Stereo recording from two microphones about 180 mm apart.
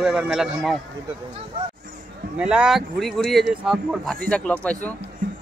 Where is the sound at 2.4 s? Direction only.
5° right (ahead or behind).